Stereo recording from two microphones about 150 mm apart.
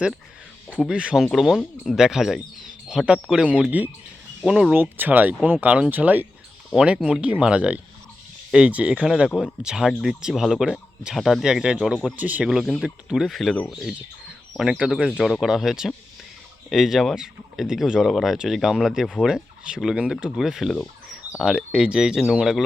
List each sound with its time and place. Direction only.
0.8 s speech: 5° right (ahead or behind)